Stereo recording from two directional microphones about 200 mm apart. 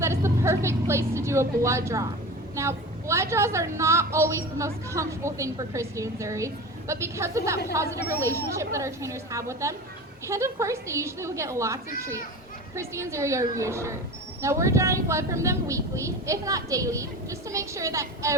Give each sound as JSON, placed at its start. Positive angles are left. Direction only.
{"t": 0.0, "sound": "a woman's voice", "side_deg": -15}